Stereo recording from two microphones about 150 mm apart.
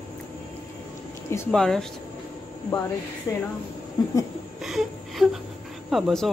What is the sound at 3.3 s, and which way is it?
Speech, 20° left (ahead or behind).